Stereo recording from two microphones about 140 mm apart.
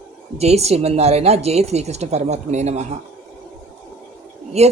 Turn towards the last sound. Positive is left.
turn(degrees=-50)  # may be behind; listen again after turning